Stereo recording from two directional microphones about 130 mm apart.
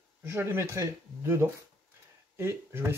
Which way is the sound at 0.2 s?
20° right (ahead or behind).